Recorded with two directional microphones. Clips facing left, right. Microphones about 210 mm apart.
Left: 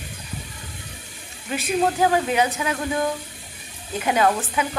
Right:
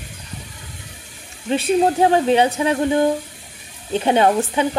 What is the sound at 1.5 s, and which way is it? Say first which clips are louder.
Speech: right 5 dB; 30° right (ahead or behind).